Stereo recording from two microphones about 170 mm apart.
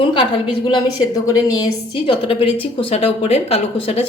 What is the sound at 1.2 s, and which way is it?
A woman's voice, 20° left (ahead or behind).